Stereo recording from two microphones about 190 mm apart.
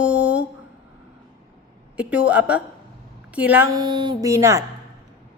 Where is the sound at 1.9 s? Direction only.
5° right (ahead or behind).